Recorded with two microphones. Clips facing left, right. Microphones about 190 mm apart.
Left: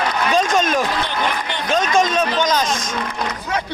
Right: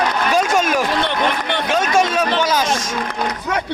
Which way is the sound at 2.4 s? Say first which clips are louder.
Left 1 dB; 5° right (ahead or behind).